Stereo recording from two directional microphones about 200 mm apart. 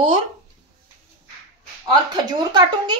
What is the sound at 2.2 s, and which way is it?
Speech, 20° right (ahead or behind).